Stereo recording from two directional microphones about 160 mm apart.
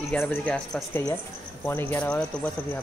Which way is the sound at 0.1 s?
10° left (ahead or behind).